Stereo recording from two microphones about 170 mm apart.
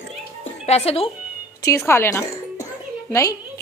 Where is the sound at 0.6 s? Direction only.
40° left (ahead or behind).